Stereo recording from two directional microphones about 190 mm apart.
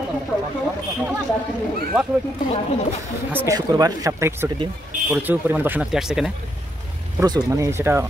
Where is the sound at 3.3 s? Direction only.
10° right (ahead or behind).